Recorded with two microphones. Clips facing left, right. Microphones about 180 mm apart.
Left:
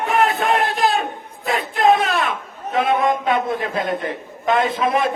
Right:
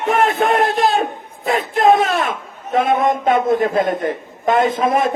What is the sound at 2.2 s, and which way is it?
Speech, 45° right (ahead or behind).